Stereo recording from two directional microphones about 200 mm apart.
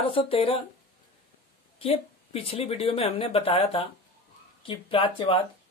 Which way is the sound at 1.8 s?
30° left (ahead or behind).